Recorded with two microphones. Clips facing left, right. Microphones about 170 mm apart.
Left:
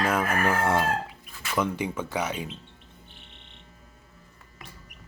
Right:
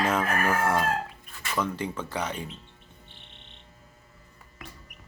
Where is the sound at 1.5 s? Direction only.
15° left (ahead or behind).